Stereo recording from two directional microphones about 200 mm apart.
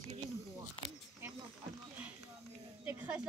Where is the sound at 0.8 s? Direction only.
25° left (ahead or behind).